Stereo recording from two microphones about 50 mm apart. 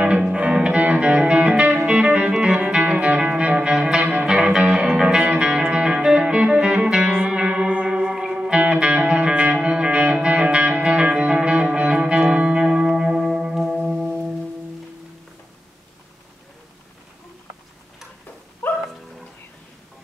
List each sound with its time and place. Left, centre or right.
0.4 s music: right
4.1 s music: right
4.4 s music: centre
13.6 s singing bowl: centre
18.6 s dog: left